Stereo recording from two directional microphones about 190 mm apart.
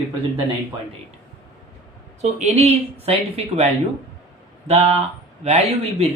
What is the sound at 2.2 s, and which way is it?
Speech, 35° right (ahead or behind).